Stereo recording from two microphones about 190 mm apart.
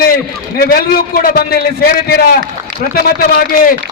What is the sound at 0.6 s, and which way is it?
A man's voice, 50° left (ahead or behind).